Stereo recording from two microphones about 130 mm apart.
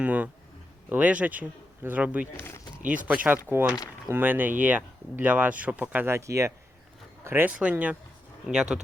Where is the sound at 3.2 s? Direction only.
15° right (ahead or behind).